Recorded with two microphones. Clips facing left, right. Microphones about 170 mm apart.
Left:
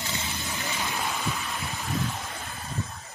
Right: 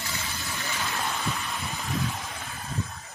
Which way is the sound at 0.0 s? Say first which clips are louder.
Left 2 dB; 20° left (ahead or behind).